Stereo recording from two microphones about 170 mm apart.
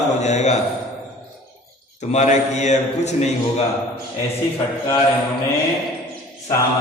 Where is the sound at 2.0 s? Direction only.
45° left (ahead or behind).